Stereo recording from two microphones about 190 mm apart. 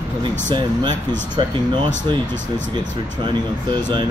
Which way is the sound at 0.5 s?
25° right (ahead or behind).